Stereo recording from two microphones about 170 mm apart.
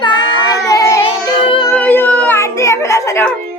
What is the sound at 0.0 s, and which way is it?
Child singing, 25° left (ahead or behind).